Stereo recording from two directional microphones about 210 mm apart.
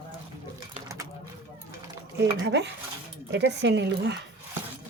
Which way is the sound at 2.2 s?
55° right (ahead or behind).